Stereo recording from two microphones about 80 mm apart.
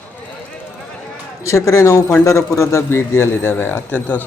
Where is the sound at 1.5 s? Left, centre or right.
Left.